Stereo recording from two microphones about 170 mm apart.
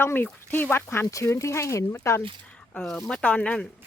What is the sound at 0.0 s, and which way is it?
Speech, 10° left (ahead or behind).